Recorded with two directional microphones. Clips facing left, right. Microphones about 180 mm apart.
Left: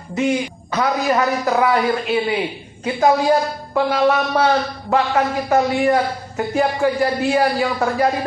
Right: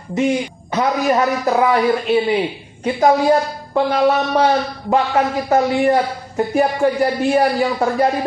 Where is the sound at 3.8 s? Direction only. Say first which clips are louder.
Right 1 dB; 20° right (ahead or behind).